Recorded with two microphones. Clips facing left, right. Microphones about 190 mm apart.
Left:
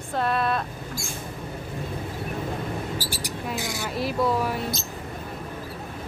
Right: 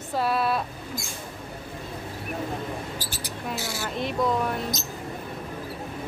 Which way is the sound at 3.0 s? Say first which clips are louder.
Left 3 dB; 10° left (ahead or behind).